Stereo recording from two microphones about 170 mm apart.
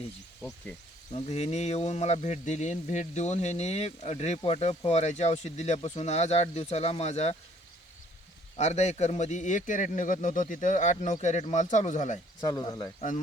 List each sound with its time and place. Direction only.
1.1 s speech: 40° left (ahead or behind)
8.5 s a man's voice: 40° left (ahead or behind)
12.4 s speech: 20° left (ahead or behind)